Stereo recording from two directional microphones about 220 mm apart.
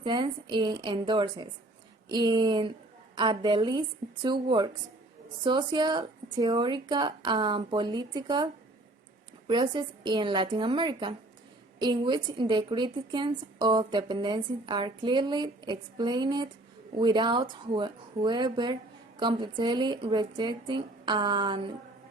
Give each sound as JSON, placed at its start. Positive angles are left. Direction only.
{"t": 0.0, "sound": "a woman's voice", "side_deg": -20}
{"t": 9.5, "sound": "a woman's voice", "side_deg": -20}